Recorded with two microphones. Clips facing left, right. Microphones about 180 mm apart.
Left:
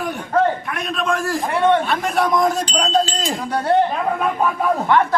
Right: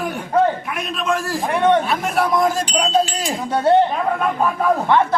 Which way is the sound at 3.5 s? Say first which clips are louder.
Right 4 dB; 25° right (ahead or behind).